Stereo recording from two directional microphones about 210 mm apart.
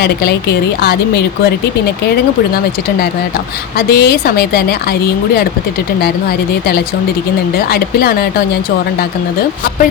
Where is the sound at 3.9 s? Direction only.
50° left (ahead or behind).